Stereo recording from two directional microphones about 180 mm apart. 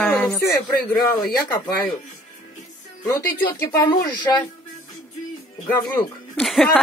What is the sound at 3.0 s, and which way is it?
Speech, 20° left (ahead or behind).